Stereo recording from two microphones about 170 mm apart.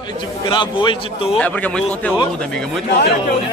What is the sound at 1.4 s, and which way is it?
Speech, 10° left (ahead or behind).